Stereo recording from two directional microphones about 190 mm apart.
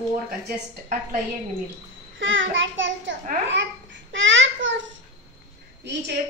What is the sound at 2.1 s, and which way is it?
A child's voice, 85° right.